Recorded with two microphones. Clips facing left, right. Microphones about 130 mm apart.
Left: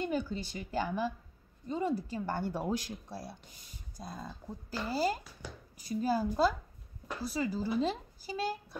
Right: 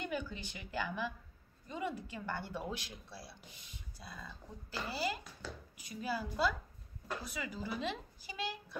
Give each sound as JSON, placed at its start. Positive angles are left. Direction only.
{"t": 0.0, "sound": "speech", "side_deg": 35}
{"t": 5.4, "sound": "speech", "side_deg": 15}
{"t": 5.8, "sound": "speech", "side_deg": 35}